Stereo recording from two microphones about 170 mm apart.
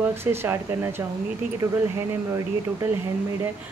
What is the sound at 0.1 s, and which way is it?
Speech, 15° right (ahead or behind).